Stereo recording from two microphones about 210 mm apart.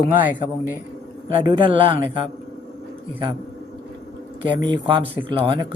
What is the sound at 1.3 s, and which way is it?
Speech, 25° right (ahead or behind).